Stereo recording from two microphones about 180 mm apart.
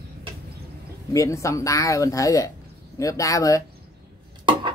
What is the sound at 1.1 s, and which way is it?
Speech, 15° left (ahead or behind).